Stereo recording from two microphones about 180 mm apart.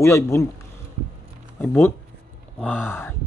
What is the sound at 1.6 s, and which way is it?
Speech, 10° left (ahead or behind).